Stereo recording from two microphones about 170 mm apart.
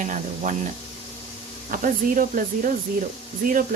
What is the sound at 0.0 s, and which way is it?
Speech, 45° right (ahead or behind).